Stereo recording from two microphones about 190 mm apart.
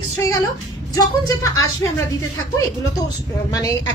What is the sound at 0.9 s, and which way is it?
A woman's voice, 20° left (ahead or behind).